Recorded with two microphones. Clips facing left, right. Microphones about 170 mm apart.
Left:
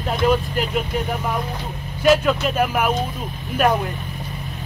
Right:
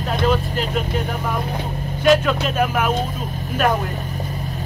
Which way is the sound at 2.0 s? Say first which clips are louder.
Even; 5° left (ahead or behind).